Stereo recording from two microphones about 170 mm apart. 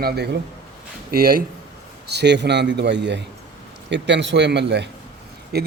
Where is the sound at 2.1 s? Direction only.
80° right.